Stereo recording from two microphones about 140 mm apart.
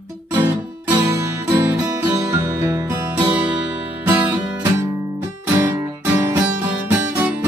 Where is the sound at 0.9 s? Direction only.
20° right (ahead or behind).